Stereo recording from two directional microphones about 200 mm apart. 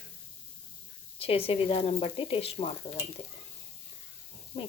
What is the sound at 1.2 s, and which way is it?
Speech, 30° left (ahead or behind).